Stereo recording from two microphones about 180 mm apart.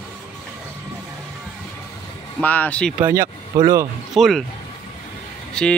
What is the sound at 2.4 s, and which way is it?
Speech, 10° left (ahead or behind).